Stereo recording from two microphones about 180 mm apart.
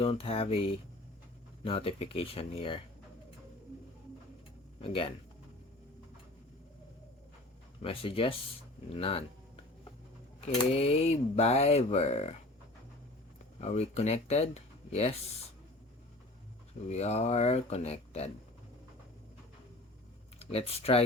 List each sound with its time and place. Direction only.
0.0 s speech: 30° left (ahead or behind)
4.8 s speech: 30° left (ahead or behind)
7.8 s speech: 30° left (ahead or behind)
10.6 s speech: 35° left (ahead or behind)
13.6 s speech: 35° left (ahead or behind)
16.9 s speech: 35° left (ahead or behind)
20.4 s speech: 35° left (ahead or behind)